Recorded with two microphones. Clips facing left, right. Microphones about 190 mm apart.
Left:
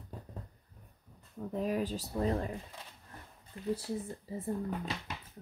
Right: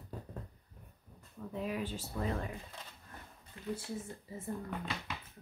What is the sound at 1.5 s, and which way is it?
Speech, 40° left (ahead or behind).